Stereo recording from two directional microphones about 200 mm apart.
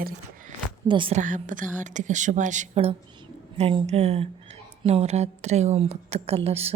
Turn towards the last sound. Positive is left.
turn(degrees=-30)  # may be behind; listen again after turning